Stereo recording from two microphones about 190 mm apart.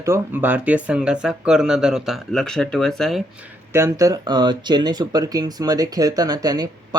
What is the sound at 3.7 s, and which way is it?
Speech, 15° right (ahead or behind).